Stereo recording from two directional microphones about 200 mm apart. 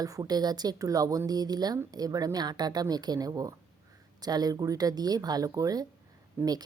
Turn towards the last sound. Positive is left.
turn(degrees=-20)  # may be behind; listen again after turning